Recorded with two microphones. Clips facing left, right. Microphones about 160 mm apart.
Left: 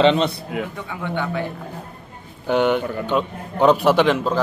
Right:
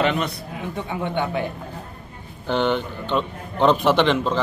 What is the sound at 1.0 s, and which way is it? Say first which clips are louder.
Speech: even; 20° right (ahead or behind).